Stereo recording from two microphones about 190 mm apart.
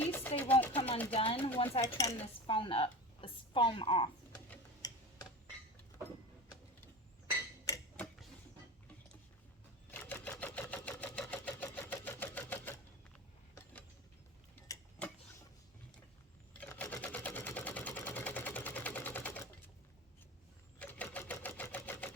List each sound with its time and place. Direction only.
0.0 s music: 10° left (ahead or behind)
0.3 s a sound: 10° left (ahead or behind)
1.1 s speech: 30° left (ahead or behind)
1.9 s dishes: 20° left (ahead or behind)
2.5 s a woman's voice: 25° left (ahead or behind)
7.9 s tick-tock: centre (ahead or behind)
9.9 s camera: 10° left (ahead or behind)
14.5 s tick-tock: 10° left (ahead or behind)
16.6 s sewing machine: 10° left (ahead or behind)
20.7 s a sound: 10° left (ahead or behind)